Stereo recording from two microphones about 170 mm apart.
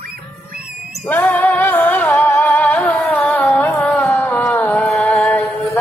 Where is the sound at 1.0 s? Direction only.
10° left (ahead or behind).